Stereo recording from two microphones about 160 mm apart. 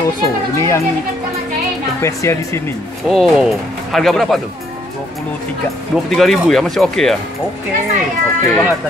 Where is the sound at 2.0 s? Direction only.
15° left (ahead or behind).